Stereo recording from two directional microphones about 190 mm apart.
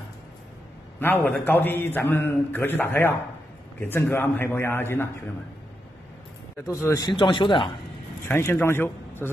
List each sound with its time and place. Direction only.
0.9 s a man's voice: 10° left (ahead or behind)
6.6 s speech: 15° left (ahead or behind)
8.3 s a man's voice: 10° left (ahead or behind)